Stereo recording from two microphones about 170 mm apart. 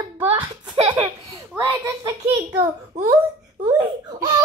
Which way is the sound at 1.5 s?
15° right (ahead or behind).